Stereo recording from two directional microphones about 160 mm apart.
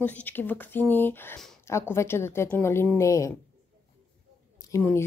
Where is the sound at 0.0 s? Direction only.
10° left (ahead or behind).